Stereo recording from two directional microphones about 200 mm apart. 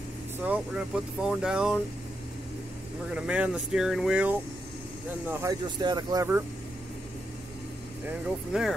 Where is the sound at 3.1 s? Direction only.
5° right (ahead or behind).